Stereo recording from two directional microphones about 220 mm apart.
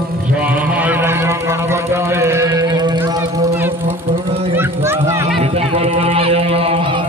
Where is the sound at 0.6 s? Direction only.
5° right (ahead or behind).